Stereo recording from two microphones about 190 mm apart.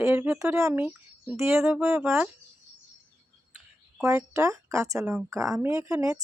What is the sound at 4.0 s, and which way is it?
Speech, 15° right (ahead or behind).